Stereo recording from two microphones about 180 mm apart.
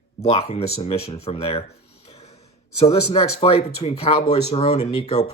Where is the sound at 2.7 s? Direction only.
35° left (ahead or behind).